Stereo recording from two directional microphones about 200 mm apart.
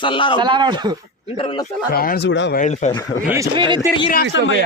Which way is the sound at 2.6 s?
35° left (ahead or behind).